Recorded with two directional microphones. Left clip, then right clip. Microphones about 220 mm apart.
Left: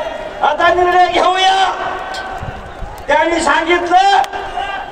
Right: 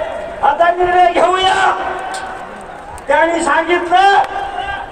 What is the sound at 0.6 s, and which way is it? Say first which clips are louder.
A man's voice: left 1 dB; 45° left (ahead or behind).